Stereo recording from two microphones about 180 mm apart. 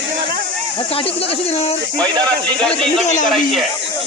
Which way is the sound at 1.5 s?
35° left (ahead or behind).